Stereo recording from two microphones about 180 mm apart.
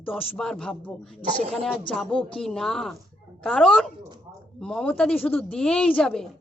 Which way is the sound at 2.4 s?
Centre (ahead or behind).